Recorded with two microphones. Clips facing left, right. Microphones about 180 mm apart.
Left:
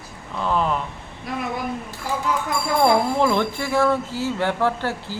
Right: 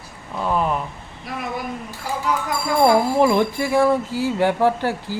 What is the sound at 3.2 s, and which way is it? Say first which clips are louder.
Speech: right 3 dB; 10° right (ahead or behind).